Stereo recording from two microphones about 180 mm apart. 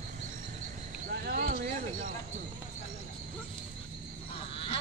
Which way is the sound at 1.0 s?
55° right (ahead or behind).